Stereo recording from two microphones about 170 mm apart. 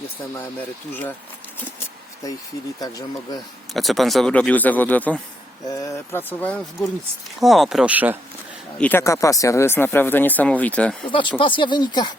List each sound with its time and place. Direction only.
2.2 s speech: 20° left (ahead or behind)
3.8 s speech: centre (ahead or behind)
7.3 s speech: centre (ahead or behind)
8.8 s speech: 15° left (ahead or behind)
11.1 s speech: 30° left (ahead or behind)